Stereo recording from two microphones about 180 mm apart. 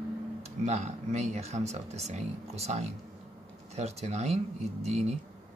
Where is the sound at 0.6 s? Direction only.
40° right (ahead or behind).